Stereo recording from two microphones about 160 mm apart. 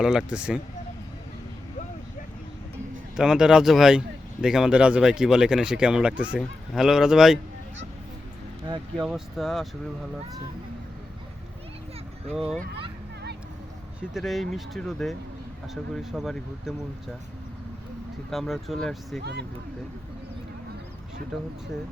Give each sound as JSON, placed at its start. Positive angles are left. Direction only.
{"t": 0.0, "sound": "speech", "side_deg": -5}
{"t": 3.2, "sound": "speech", "side_deg": -5}
{"t": 8.6, "sound": "speech", "side_deg": -25}
{"t": 9.0, "sound": "speech", "side_deg": 0}
{"t": 14.1, "sound": "speech", "side_deg": 0}
{"t": 18.3, "sound": "speech", "side_deg": 0}
{"t": 19.2, "sound": "speech", "side_deg": -90}